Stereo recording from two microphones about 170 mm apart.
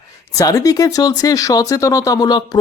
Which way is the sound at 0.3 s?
20° left (ahead or behind).